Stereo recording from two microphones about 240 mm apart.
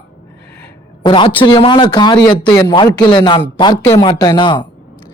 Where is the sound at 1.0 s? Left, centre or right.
Centre.